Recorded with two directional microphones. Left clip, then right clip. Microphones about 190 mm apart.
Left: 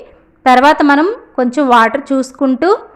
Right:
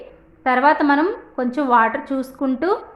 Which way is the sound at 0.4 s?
45° left (ahead or behind).